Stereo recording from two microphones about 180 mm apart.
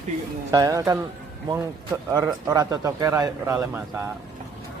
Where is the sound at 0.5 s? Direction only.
20° right (ahead or behind).